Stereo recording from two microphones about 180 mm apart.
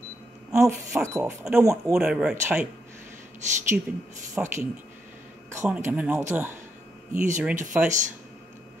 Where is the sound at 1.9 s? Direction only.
5° right (ahead or behind).